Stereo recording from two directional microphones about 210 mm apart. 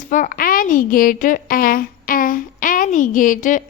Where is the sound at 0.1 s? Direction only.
40° left (ahead or behind).